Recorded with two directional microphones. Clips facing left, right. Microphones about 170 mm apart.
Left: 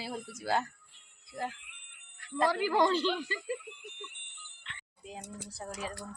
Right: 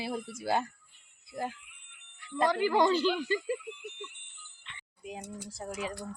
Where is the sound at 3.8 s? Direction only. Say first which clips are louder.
Right 4 dB; 60° left (ahead or behind).